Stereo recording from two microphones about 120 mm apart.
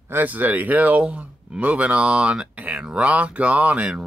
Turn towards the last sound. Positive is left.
turn(degrees=-10)  # may be behind; listen again after turning